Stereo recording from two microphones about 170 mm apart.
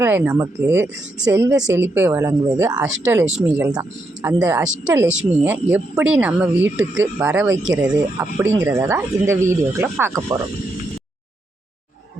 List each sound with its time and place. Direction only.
0.0 s speech: 10° right (ahead or behind)
2.8 s speech: 10° right (ahead or behind)
7.8 s speech: 5° right (ahead or behind)
8.4 s speech: 15° right (ahead or behind)